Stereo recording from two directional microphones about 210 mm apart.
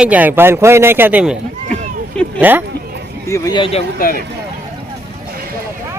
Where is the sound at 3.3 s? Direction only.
15° left (ahead or behind).